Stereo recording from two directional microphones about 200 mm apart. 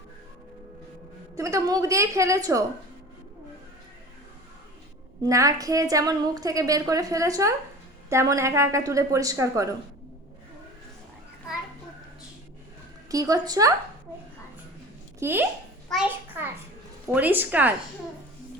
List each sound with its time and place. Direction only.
1.4 s a woman's voice: 15° right (ahead or behind)
5.2 s a woman's voice: 15° right (ahead or behind)
13.1 s a woman's voice: 15° right (ahead or behind)
15.2 s a woman's voice: 10° right (ahead or behind)